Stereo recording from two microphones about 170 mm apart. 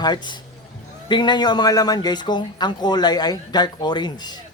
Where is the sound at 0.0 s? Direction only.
25° left (ahead or behind).